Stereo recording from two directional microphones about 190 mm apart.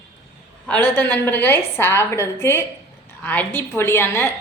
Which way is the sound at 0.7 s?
10° left (ahead or behind).